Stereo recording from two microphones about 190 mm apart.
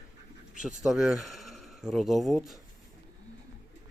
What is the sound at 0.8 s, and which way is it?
Speech, centre (ahead or behind).